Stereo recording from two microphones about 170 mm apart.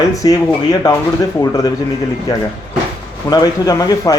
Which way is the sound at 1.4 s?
20° left (ahead or behind).